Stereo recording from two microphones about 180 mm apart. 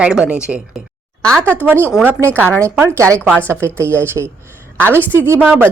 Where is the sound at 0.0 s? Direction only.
5° right (ahead or behind).